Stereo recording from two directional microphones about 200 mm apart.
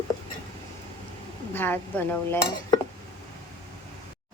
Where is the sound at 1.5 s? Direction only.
10° left (ahead or behind).